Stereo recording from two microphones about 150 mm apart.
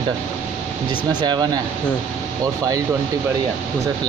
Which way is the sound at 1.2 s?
30° right (ahead or behind).